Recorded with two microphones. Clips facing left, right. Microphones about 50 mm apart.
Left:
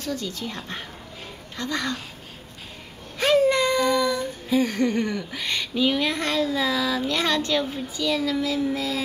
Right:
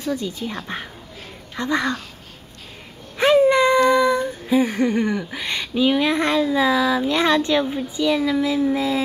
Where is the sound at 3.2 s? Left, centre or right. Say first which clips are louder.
Right 5 dB; centre.